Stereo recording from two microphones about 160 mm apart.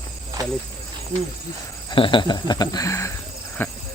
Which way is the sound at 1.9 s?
30° left (ahead or behind).